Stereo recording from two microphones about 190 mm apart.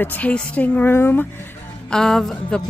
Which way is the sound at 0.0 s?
10° left (ahead or behind).